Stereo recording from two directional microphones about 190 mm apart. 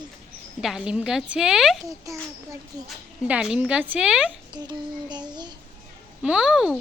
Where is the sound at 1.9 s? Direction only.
15° right (ahead or behind).